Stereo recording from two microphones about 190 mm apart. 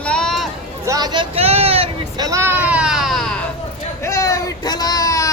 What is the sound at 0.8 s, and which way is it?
Speech, 20° right (ahead or behind).